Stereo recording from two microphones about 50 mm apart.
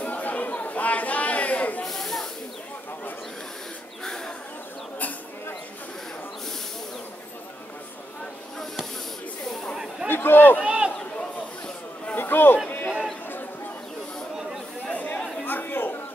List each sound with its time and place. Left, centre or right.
0.0 s chatter: left
1.9 s snake: centre
4.0 s bird: centre
10.0 s a sound: left
10.6 s run: right
11.1 s a sound: left
12.2 s a sound: left
14.9 s chatter: left
15.4 s chatter: left